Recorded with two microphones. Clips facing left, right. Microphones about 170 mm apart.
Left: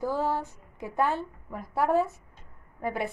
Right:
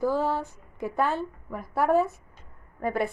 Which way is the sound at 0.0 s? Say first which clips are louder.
Right 3 dB; 15° left (ahead or behind).